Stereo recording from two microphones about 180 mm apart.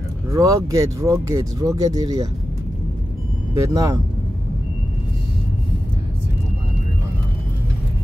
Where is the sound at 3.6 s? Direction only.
20° right (ahead or behind).